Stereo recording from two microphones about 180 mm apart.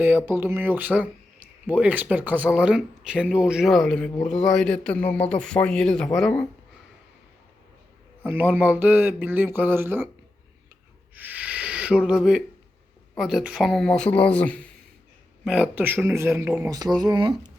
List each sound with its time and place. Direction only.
0.3 s a man's voice: 10° right (ahead or behind)
8.2 s speech: 10° right (ahead or behind)
11.1 s a sound: 10° right (ahead or behind)
13.1 s a man's voice: centre (ahead or behind)
15.4 s speech: 5° right (ahead or behind)
17.0 s speech: 25° right (ahead or behind)